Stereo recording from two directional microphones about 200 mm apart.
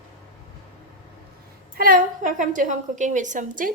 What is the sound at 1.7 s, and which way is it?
A woman's voice, 45° right (ahead or behind).